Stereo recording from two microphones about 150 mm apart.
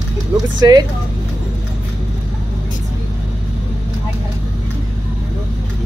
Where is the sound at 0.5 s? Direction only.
25° right (ahead or behind).